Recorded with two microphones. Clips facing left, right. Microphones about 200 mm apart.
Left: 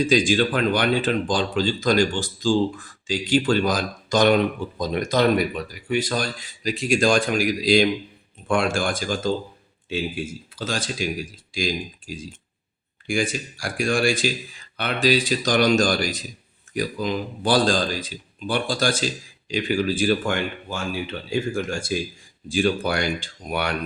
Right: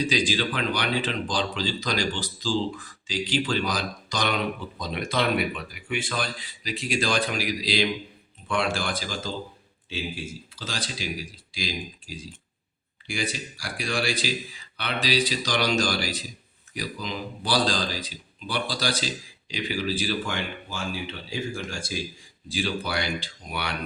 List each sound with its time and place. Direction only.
0.0 s a man's voice: 50° left (ahead or behind)
10.5 s a man's voice: 50° left (ahead or behind)